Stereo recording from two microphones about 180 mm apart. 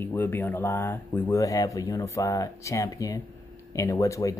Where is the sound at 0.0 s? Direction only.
10° left (ahead or behind).